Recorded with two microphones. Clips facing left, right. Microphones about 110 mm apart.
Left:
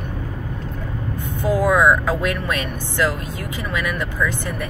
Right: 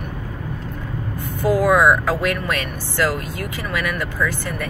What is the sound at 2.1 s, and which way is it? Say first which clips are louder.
Speech: right 1 dB; 20° left (ahead or behind).